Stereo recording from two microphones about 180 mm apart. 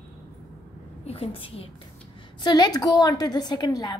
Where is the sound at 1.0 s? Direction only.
30° left (ahead or behind).